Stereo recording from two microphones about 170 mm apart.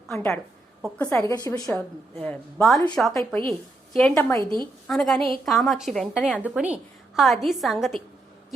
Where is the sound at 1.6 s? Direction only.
5° left (ahead or behind).